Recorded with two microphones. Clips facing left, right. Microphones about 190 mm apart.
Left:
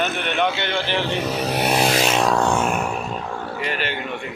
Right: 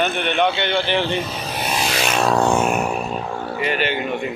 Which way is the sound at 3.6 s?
Centre (ahead or behind).